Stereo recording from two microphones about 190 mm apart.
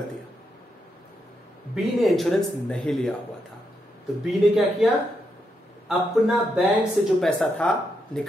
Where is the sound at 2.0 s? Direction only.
Centre (ahead or behind).